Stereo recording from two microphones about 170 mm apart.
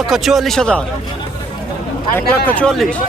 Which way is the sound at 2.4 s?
5° left (ahead or behind).